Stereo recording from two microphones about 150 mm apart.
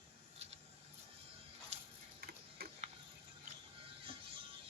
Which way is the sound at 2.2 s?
90° right.